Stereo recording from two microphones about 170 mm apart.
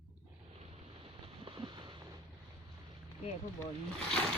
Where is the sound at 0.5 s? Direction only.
35° right (ahead or behind).